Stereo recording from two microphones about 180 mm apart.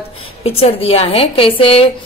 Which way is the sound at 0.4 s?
35° left (ahead or behind).